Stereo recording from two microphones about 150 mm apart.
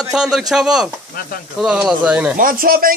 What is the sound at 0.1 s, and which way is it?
A man's voice, 5° right (ahead or behind).